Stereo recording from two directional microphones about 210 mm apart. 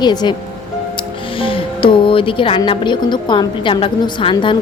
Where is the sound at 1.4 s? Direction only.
25° left (ahead or behind).